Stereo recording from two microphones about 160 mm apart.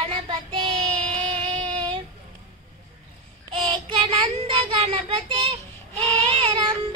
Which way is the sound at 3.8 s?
35° right (ahead or behind).